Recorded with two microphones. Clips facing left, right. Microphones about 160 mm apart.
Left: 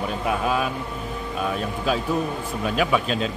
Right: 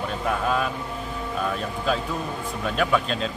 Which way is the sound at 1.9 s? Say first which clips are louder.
Left 3 dB; 5° left (ahead or behind).